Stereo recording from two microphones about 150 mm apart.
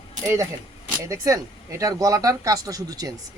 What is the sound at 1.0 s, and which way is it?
Speech, 20° right (ahead or behind).